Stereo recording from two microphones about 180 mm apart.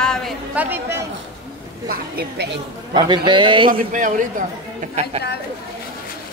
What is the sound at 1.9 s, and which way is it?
Speech, 60° right (ahead or behind).